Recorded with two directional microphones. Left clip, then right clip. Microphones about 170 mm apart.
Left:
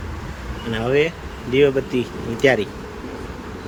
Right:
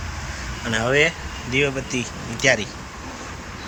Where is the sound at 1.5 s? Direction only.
20° left (ahead or behind).